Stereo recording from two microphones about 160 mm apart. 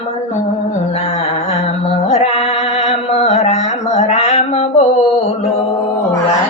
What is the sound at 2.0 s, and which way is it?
Music, 40° left (ahead or behind).